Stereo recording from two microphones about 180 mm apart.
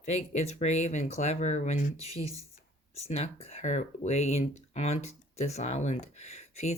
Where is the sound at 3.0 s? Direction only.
35° left (ahead or behind).